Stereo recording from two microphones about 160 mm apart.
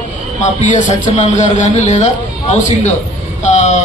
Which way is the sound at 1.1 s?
50° left (ahead or behind).